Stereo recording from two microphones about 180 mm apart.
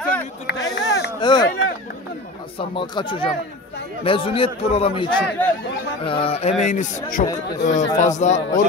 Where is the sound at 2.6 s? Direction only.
25° left (ahead or behind).